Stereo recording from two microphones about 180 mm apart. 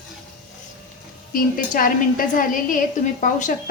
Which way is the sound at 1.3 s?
50° left (ahead or behind).